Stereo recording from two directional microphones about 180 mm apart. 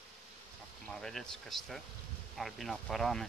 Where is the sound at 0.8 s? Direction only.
Centre (ahead or behind).